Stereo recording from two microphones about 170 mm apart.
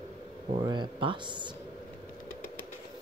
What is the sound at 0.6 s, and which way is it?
Speech, 25° right (ahead or behind).